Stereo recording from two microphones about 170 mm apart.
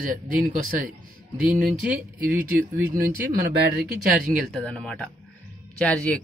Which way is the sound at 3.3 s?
60° right (ahead or behind).